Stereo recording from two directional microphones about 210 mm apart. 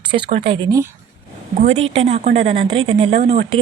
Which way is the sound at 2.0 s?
30° right (ahead or behind).